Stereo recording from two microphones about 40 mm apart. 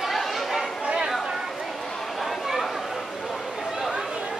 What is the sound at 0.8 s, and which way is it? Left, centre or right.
Chatter, right.